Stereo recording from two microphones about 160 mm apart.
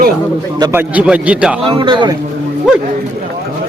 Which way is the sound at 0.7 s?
10° right (ahead or behind).